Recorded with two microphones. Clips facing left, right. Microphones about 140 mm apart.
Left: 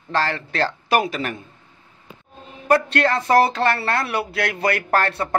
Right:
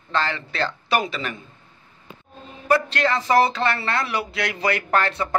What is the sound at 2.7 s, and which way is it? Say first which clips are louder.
Speech: left 2 dB; 55° left (ahead or behind).